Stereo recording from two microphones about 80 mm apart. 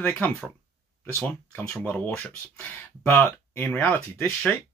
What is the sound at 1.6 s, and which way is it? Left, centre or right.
Speech, centre.